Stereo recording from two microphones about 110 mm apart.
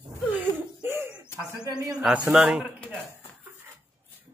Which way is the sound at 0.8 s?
20° right (ahead or behind).